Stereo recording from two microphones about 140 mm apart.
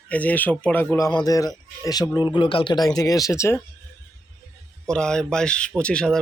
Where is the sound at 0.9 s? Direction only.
25° left (ahead or behind).